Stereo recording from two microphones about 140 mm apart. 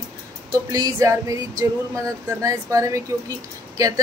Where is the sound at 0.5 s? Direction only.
25° right (ahead or behind).